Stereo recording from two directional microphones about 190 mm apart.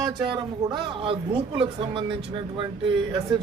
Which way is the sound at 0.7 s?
30° right (ahead or behind).